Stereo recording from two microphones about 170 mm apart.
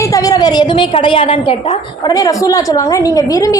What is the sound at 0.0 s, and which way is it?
A woman's voice, 20° left (ahead or behind).